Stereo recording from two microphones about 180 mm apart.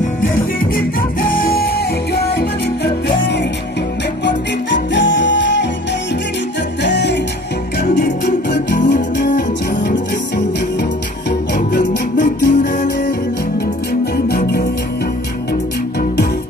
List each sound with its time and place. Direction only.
1.3 s music: 55° left (ahead or behind)
2.2 s music: 65° left (ahead or behind)
4.3 s music: 80° left
6.8 s music: 70° left (ahead or behind)
7.8 s music: 55° left (ahead or behind)
11.7 s music: 50° left (ahead or behind)
14.1 s music: 60° left (ahead or behind)